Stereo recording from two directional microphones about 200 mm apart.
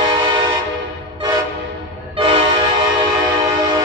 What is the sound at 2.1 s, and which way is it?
Train, 25° right (ahead or behind).